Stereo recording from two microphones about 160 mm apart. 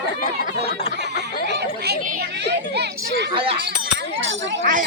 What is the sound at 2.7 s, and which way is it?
Children playing, 90° right.